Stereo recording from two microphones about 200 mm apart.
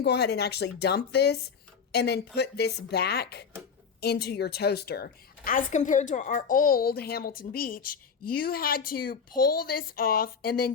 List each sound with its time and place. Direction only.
0.0 s a woman's voice: 55° left (ahead or behind)